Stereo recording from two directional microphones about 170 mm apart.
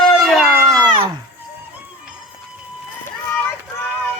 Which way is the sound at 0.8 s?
25° right (ahead or behind).